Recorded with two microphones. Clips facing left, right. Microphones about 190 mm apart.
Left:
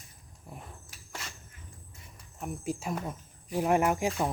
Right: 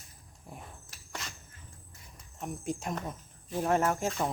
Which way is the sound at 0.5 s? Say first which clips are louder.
Left 1 dB; 5° left (ahead or behind).